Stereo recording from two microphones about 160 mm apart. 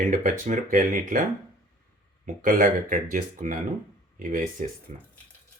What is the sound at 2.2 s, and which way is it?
Speech, 55° right (ahead or behind).